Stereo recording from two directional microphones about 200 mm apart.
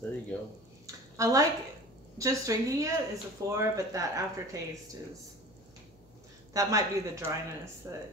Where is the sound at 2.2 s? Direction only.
15° right (ahead or behind).